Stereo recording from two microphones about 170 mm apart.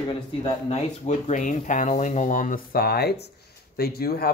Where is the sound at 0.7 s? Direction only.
45° left (ahead or behind).